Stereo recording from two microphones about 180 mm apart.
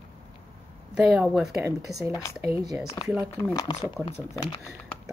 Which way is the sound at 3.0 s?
30° left (ahead or behind).